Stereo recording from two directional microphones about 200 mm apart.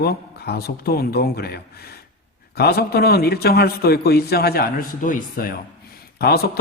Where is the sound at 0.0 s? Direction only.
50° left (ahead or behind).